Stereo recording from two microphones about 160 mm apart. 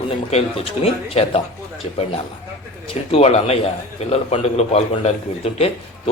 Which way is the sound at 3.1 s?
40° left (ahead or behind).